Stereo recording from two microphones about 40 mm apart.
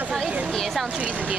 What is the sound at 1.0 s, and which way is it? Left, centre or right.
Speech, right.